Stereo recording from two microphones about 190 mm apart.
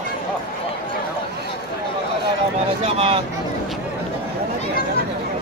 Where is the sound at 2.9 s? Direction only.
30° right (ahead or behind).